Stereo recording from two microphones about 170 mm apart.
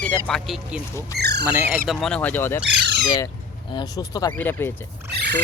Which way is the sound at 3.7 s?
20° left (ahead or behind).